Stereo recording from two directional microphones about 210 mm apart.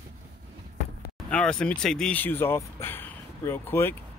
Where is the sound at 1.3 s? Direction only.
5° left (ahead or behind).